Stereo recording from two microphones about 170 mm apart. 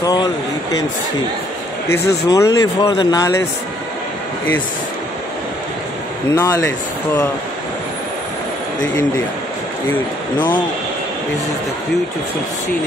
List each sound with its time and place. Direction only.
0.0 s speech: 25° left (ahead or behind)
1.9 s speech: 20° left (ahead or behind)
6.3 s speech: 15° left (ahead or behind)